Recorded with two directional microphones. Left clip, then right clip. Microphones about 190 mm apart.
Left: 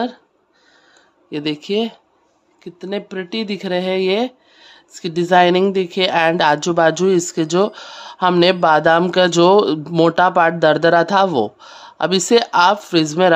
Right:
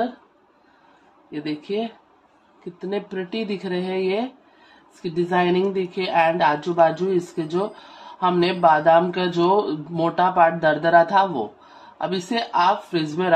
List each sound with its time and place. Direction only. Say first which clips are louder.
1.3 s speech: left 6 dB; 65° left (ahead or behind)
2.8 s speech: left 3 dB; 40° left (ahead or behind); by 13.3 s 70° left (ahead or behind)